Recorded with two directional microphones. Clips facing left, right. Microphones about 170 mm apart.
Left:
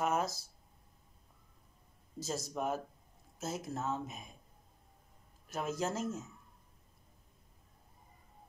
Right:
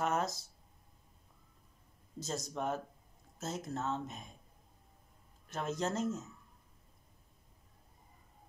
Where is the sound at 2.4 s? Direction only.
5° left (ahead or behind).